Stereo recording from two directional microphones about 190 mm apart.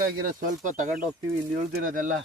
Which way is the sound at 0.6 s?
40° right (ahead or behind).